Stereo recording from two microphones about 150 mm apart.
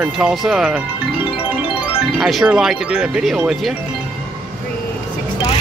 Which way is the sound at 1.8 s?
Centre (ahead or behind).